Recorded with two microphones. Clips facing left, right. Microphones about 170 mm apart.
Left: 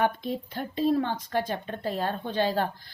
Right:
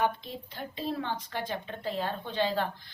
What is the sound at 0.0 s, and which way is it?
A woman's voice, 50° left (ahead or behind).